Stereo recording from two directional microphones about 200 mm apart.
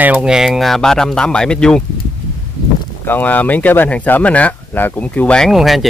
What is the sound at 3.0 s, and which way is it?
Speech, 10° left (ahead or behind).